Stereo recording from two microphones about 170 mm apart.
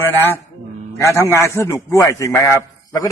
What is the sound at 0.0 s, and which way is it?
A man's voice, 15° left (ahead or behind).